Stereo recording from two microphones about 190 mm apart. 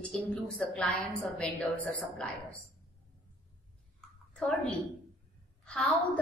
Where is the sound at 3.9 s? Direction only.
5° left (ahead or behind).